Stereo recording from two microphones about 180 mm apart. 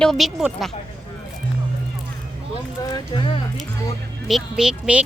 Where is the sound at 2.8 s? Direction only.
25° left (ahead or behind).